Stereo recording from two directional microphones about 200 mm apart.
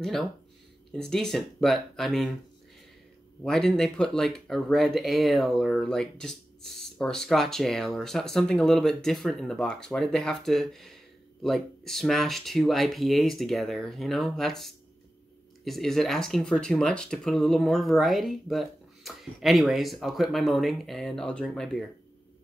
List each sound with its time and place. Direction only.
0.9 s speech: 5° left (ahead or behind)
3.4 s speech: 5° left (ahead or behind)